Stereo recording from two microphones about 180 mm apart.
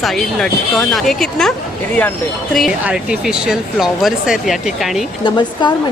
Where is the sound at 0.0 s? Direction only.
Centre (ahead or behind).